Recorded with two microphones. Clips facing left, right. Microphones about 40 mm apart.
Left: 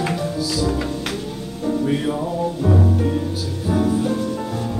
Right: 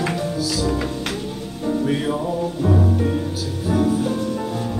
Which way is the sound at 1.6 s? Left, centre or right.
Centre.